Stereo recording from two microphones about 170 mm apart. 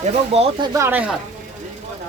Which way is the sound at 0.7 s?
15° right (ahead or behind).